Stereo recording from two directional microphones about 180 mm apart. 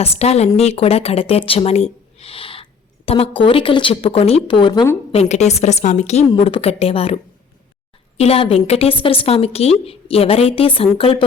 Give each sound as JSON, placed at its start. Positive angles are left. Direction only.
{"t": 0.0, "sound": "a woman's voice", "side_deg": 35}
{"t": 5.1, "sound": "a woman's voice", "side_deg": 40}
{"t": 8.2, "sound": "a woman's voice", "side_deg": 30}